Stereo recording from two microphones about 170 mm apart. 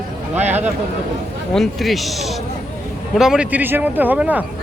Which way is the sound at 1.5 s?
Centre (ahead or behind).